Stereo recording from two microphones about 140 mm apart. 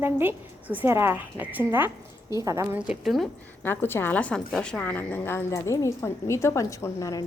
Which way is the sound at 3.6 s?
15° left (ahead or behind).